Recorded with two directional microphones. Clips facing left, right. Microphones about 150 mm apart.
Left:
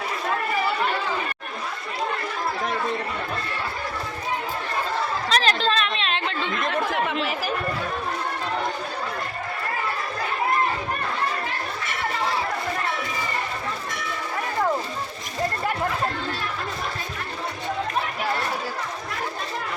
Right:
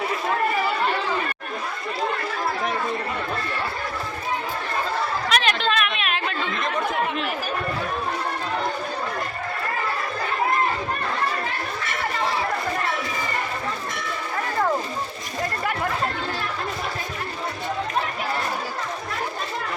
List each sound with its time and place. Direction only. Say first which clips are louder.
5.3 s chatter: left 1 dB; 35° left (ahead or behind)